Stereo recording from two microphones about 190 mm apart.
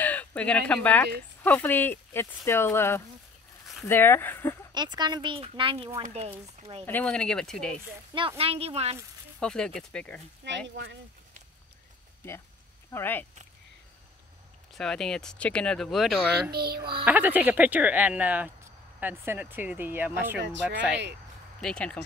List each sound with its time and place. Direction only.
0.0 s speech: 10° left (ahead or behind)
4.7 s speech: 20° right (ahead or behind)
6.9 s speech: 5° left (ahead or behind)
8.1 s speech: 25° right (ahead or behind)
9.4 s speech: 5° left (ahead or behind)
10.4 s speech: 70° right (ahead or behind)
12.9 s speech: 10° left (ahead or behind)
14.7 s speech: centre (ahead or behind)
16.4 s music: 55° right (ahead or behind)
17.0 s speech: 10° right (ahead or behind)
20.3 s speech: 65° right (ahead or behind)
21.5 s speech: 5° left (ahead or behind)